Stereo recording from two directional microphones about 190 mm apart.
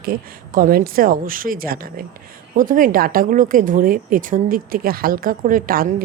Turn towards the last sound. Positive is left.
turn(degrees=-50)  # may be behind; listen again after turning